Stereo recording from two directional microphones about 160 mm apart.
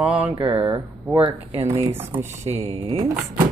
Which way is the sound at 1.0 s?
20° right (ahead or behind).